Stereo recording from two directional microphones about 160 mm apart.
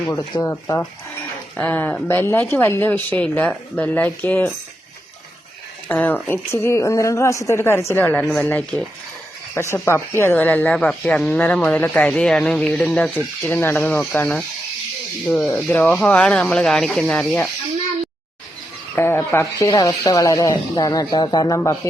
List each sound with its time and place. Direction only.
0.0 s speech: 15° left (ahead or behind)
5.9 s speech: 10° left (ahead or behind)
18.9 s speech: 15° left (ahead or behind)